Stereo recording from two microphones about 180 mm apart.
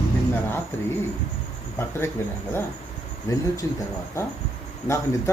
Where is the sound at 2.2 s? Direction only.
15° left (ahead or behind).